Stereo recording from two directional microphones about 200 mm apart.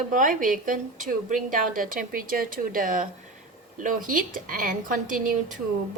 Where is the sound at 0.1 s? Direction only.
40° right (ahead or behind).